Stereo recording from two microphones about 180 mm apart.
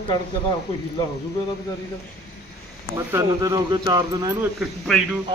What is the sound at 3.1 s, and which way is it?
Speech, 20° right (ahead or behind).